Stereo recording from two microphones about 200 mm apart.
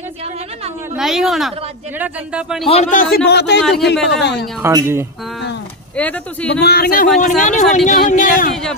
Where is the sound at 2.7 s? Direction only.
35° left (ahead or behind).